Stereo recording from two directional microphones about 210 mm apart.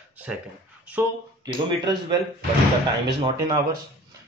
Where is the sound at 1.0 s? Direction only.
20° right (ahead or behind).